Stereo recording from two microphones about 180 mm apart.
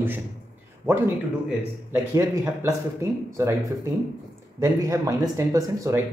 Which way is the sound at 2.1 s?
15° right (ahead or behind).